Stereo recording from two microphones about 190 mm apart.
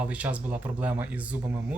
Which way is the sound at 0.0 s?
5° right (ahead or behind).